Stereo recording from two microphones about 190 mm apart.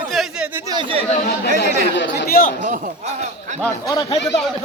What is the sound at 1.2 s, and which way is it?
Speech, 60° left (ahead or behind).